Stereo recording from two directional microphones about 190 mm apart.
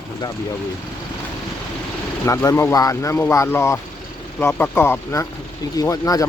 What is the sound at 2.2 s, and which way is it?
Speech, 15° left (ahead or behind).